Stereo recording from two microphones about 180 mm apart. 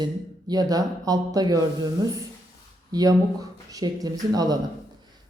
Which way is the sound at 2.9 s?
20° right (ahead or behind).